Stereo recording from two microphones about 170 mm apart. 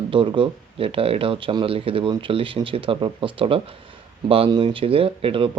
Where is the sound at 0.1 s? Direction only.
30° right (ahead or behind).